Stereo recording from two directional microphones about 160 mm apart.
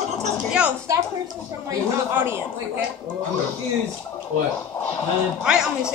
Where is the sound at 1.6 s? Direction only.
15° right (ahead or behind).